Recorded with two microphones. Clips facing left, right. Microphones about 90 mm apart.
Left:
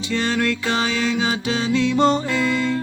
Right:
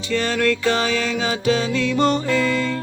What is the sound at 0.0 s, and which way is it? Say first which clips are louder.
Music: right 1 dB; 20° left (ahead or behind).